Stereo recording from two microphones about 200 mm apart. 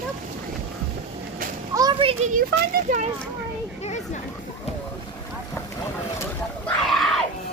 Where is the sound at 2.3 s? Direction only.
40° right (ahead or behind).